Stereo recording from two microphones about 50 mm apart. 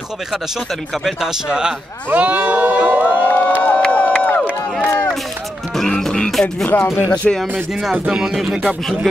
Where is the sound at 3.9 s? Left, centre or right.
Left.